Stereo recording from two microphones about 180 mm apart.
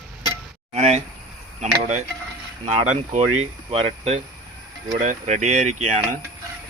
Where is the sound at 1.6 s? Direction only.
40° right (ahead or behind).